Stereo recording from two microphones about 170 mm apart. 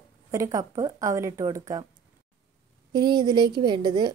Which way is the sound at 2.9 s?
25° right (ahead or behind).